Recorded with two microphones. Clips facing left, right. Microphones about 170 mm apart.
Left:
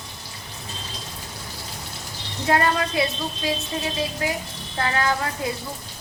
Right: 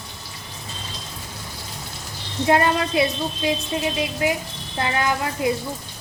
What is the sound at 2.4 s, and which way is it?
A woman's voice, 20° right (ahead or behind).